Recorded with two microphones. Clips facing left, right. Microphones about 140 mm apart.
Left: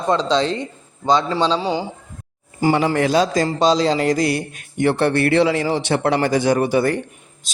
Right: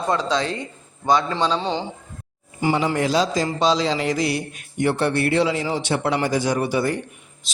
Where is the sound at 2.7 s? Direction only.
65° left (ahead or behind).